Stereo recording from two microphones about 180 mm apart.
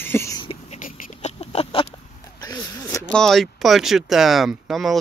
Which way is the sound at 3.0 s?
Centre (ahead or behind).